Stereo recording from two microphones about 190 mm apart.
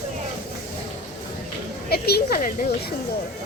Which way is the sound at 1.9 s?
55° left (ahead or behind).